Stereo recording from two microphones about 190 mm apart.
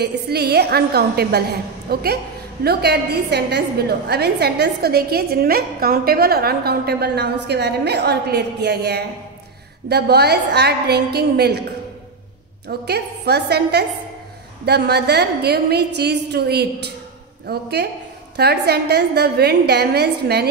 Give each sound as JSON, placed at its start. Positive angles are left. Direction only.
{"t": 0.0, "sound": "a woman's voice", "side_deg": -60}
{"t": 12.6, "sound": "a woman's voice", "side_deg": -60}